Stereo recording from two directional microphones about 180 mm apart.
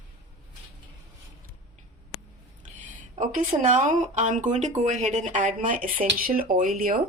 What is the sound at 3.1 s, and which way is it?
Speech, 45° right (ahead or behind).